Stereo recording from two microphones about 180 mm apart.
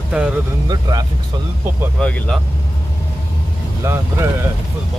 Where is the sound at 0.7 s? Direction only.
20° right (ahead or behind).